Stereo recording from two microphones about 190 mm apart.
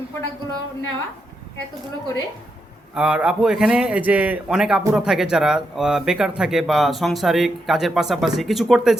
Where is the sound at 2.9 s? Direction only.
5° right (ahead or behind).